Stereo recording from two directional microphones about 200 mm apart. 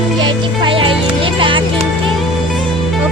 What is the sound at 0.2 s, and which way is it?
Music, 25° right (ahead or behind).